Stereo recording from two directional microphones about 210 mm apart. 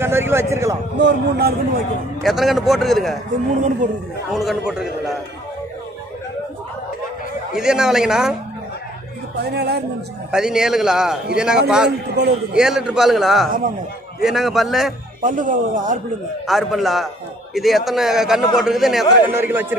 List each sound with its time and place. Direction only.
0.0 s a man's voice: 10° right (ahead or behind)
0.9 s a man's voice: 50° right (ahead or behind)
2.2 s a man's voice: centre (ahead or behind)
4.3 s a man's voice: centre (ahead or behind)
7.5 s a man's voice: 5° right (ahead or behind)
9.4 s a man's voice: 50° right (ahead or behind)
10.3 s a man's voice: 5° right (ahead or behind)
12.2 s a man's voice: 50° right (ahead or behind)
12.5 s a man's voice: 5° right (ahead or behind)
15.2 s speech: 40° right (ahead or behind)
16.4 s a man's voice: centre (ahead or behind)